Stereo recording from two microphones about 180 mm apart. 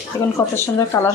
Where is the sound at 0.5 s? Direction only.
15° left (ahead or behind).